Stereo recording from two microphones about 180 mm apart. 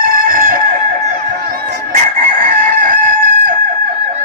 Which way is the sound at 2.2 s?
50° right (ahead or behind).